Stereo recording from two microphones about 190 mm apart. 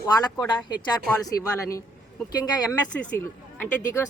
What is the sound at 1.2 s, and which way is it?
Speech, 15° left (ahead or behind).